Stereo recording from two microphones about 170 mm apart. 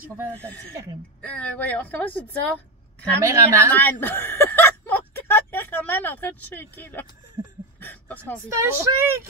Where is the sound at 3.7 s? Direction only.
10° left (ahead or behind).